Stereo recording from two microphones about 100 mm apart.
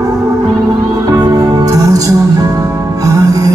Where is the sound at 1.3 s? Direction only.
40° right (ahead or behind).